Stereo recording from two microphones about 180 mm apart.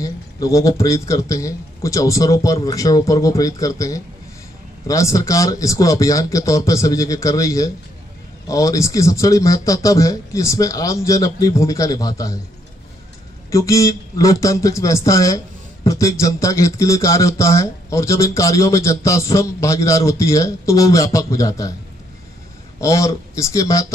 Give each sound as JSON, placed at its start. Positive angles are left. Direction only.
{"t": 0.0, "sound": "a man's voice", "side_deg": 20}
{"t": 13.5, "sound": "speech", "side_deg": 15}
{"t": 22.8, "sound": "speech", "side_deg": 15}